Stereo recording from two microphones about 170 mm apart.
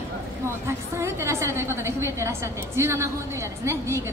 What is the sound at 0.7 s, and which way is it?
A woman's voice, 15° right (ahead or behind).